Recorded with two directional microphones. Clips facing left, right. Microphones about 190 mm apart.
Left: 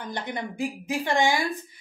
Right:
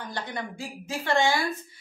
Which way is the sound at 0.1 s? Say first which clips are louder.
Left 3 dB; 20° left (ahead or behind).